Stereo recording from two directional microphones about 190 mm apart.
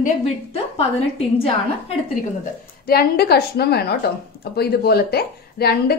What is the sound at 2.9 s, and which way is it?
A woman's voice, 55° left (ahead or behind).